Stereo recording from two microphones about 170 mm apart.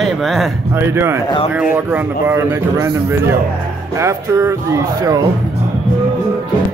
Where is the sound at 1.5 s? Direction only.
10° right (ahead or behind).